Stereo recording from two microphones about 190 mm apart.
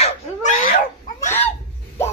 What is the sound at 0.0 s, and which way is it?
Cat, 40° left (ahead or behind).